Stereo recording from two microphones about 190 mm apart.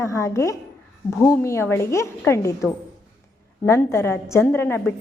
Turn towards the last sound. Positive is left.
turn(degrees=10)  # may be behind; listen again after turning